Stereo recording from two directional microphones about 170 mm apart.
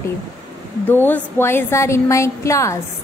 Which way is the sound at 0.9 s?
10° left (ahead or behind).